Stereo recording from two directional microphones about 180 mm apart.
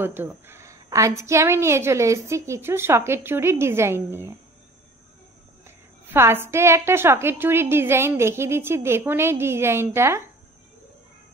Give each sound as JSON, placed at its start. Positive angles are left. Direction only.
{"t": 0.0, "sound": "a woman's voice", "side_deg": -10}
{"t": 6.0, "sound": "a woman's voice", "side_deg": -15}